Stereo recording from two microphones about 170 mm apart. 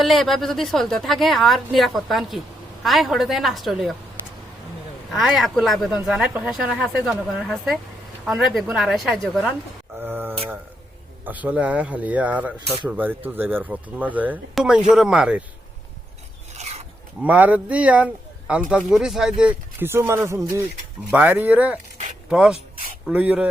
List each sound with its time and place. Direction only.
0.0 s a woman's voice: centre (ahead or behind)
5.1 s a woman's voice: centre (ahead or behind)
10.0 s speech: 10° right (ahead or behind)
12.5 s speech: 30° right (ahead or behind)
12.9 s speech: 10° right (ahead or behind)
16.6 s filing: 40° right (ahead or behind)
17.2 s a woman's voice: 10° right (ahead or behind)